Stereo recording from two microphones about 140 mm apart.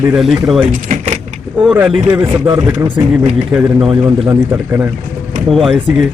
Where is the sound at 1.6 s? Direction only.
5° right (ahead or behind).